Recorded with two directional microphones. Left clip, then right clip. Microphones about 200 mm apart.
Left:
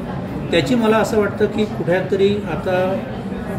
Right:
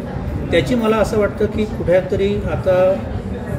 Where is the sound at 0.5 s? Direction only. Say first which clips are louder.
Even; 10° left (ahead or behind).